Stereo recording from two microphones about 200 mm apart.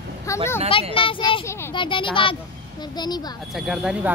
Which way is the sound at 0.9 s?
25° left (ahead or behind).